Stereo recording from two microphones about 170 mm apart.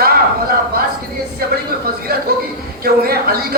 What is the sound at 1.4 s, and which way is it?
Speech, 60° right (ahead or behind).